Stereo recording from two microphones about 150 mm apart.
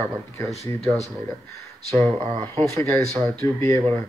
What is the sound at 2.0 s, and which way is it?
Speech, 35° right (ahead or behind).